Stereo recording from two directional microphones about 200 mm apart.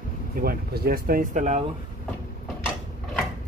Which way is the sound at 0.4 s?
50° right (ahead or behind).